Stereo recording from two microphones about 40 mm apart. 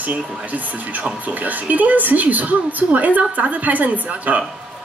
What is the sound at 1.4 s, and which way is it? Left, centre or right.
A woman's voice, right.